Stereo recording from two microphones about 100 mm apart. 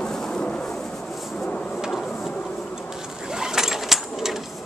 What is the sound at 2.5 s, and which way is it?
Bee, centre (ahead or behind).